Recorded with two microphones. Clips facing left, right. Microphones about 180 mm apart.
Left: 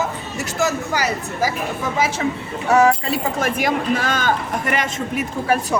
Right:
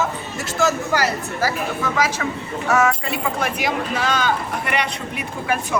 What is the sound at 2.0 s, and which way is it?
Speech, 25° left (ahead or behind).